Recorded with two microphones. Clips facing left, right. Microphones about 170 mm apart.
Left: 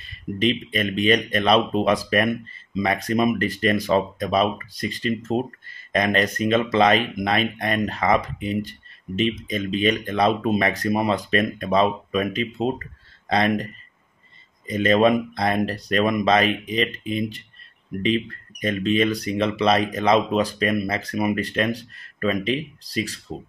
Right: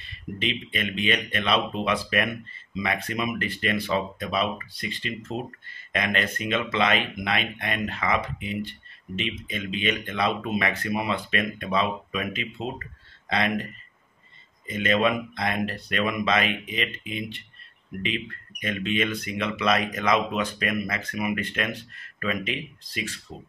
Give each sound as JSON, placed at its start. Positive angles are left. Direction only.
{"t": 0.4, "sound": "speech", "side_deg": 40}
{"t": 14.7, "sound": "speech", "side_deg": 35}